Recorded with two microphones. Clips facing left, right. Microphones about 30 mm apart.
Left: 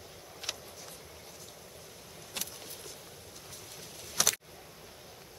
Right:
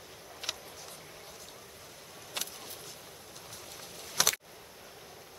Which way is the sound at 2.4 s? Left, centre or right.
Centre.